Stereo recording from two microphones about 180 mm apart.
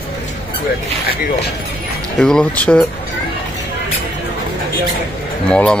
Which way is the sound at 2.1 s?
5° left (ahead or behind).